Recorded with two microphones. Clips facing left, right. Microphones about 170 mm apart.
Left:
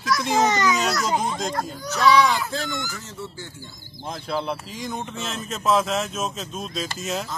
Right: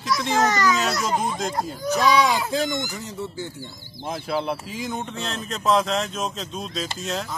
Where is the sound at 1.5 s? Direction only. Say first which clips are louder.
Right 3 dB; 15° right (ahead or behind).